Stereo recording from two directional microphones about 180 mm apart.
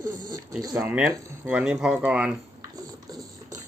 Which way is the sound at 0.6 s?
20° right (ahead or behind).